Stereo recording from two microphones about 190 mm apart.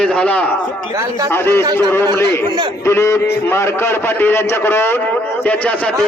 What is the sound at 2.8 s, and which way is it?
A man's voice, 15° left (ahead or behind).